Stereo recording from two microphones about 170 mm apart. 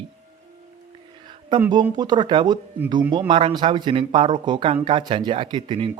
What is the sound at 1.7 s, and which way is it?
Speech, 25° right (ahead or behind).